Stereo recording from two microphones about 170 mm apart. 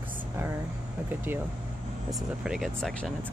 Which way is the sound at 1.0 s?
10° right (ahead or behind).